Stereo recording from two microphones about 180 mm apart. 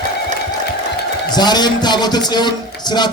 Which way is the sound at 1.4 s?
25° left (ahead or behind).